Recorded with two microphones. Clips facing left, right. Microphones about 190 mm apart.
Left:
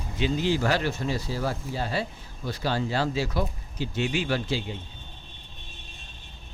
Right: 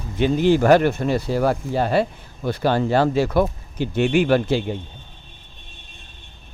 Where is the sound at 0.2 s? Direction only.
55° right (ahead or behind).